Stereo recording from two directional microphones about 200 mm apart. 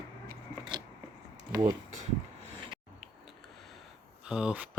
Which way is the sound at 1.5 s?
20° right (ahead or behind).